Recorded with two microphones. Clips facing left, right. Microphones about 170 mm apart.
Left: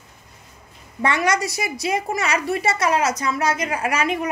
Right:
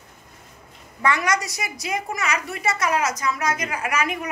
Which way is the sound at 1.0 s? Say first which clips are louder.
Left 2 dB; 25° left (ahead or behind).